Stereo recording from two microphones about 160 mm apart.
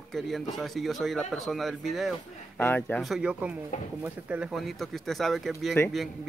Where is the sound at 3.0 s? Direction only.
5° right (ahead or behind).